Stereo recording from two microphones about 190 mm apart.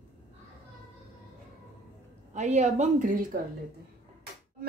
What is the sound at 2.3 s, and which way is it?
Speech, 40° right (ahead or behind).